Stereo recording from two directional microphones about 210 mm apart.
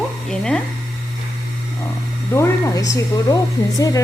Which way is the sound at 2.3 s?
15° left (ahead or behind).